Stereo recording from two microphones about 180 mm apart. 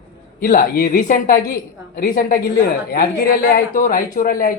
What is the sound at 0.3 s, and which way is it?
A man's voice, 50° left (ahead or behind).